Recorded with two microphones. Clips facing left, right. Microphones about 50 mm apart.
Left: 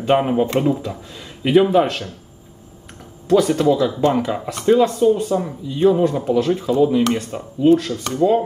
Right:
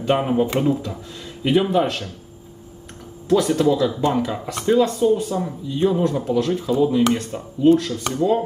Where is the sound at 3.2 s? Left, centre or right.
Centre.